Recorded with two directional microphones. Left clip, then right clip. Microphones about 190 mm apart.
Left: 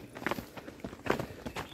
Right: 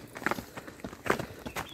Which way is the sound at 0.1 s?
45° right (ahead or behind).